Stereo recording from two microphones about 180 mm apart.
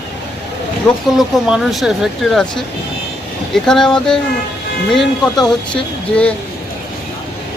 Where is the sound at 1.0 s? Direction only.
Centre (ahead or behind).